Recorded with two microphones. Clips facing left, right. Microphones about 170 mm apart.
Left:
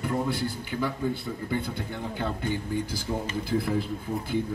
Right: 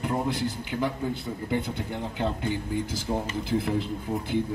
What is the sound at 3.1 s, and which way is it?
Speech, 70° right (ahead or behind).